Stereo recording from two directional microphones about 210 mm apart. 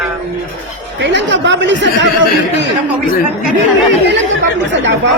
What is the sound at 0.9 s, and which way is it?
A woman's voice, 60° right (ahead or behind).